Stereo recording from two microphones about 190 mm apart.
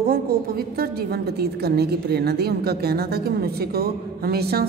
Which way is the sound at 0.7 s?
55° right (ahead or behind).